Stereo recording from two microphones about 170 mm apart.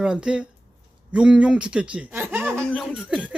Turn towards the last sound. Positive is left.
turn(degrees=5)  # may be behind; listen again after turning